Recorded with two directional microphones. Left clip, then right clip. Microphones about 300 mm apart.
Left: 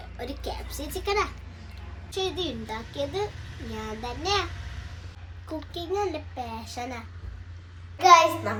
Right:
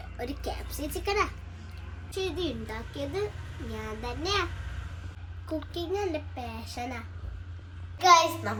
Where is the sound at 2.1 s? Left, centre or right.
Centre.